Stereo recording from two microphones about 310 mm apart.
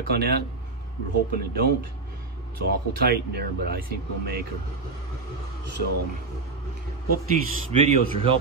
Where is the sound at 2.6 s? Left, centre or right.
Right.